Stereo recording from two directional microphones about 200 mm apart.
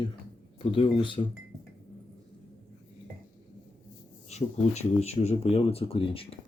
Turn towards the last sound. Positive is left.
turn(degrees=30)  # may be behind; listen again after turning